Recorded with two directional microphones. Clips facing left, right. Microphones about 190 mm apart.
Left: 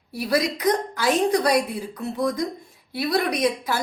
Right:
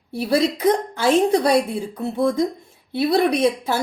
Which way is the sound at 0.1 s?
25° right (ahead or behind).